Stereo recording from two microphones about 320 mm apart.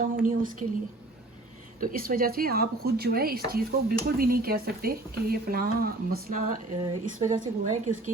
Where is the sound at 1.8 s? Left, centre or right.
Right.